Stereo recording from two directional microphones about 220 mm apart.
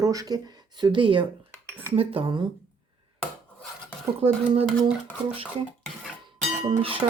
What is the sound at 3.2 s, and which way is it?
Wood, centre (ahead or behind).